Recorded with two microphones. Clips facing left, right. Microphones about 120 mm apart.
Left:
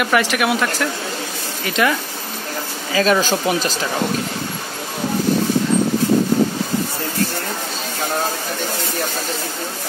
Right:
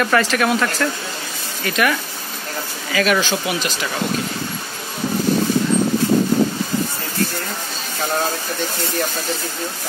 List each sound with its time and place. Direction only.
0.0 s a man's voice: 15° left (ahead or behind); by 3.2 s 30° left (ahead or behind)
3.2 s speech: 40° left (ahead or behind)